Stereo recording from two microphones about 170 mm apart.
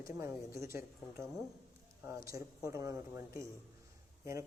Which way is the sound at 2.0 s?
15° right (ahead or behind).